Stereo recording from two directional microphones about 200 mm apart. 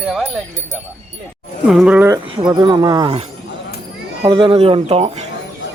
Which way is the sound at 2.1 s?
25° right (ahead or behind).